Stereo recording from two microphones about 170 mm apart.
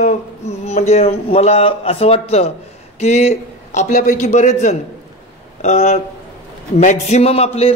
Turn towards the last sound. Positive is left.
turn(degrees=35)  # may be behind; listen again after turning